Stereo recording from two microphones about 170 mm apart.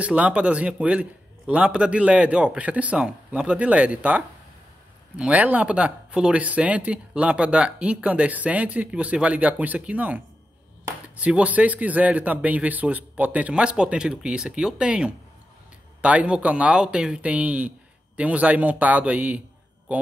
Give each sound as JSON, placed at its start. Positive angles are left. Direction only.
{"t": 0.0, "sound": "speech", "side_deg": -10}